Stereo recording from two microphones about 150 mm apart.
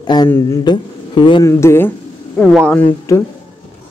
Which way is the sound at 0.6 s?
30° left (ahead or behind).